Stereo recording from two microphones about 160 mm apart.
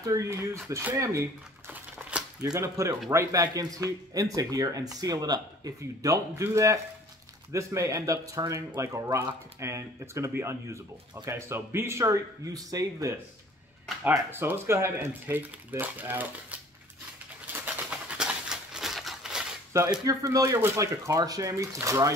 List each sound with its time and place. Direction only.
0.0 s speech: 20° right (ahead or behind)
1.7 s crumpling: 10° right (ahead or behind)
2.5 s speech: 20° right (ahead or behind)
17.5 s a sound: 10° right (ahead or behind)
20.1 s speech: 20° right (ahead or behind)